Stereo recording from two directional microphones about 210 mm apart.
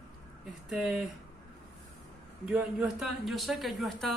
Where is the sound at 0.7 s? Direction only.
5° right (ahead or behind).